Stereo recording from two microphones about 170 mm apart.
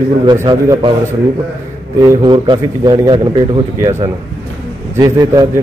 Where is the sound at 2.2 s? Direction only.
30° right (ahead or behind).